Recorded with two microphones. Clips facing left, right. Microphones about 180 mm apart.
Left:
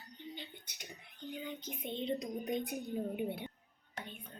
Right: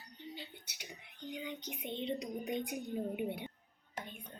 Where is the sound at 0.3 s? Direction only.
5° right (ahead or behind).